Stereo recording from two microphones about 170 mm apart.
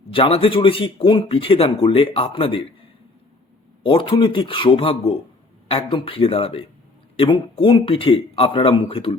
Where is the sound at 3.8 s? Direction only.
30° left (ahead or behind).